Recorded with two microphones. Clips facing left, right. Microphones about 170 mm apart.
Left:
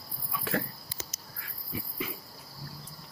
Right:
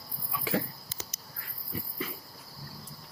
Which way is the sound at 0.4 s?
5° right (ahead or behind).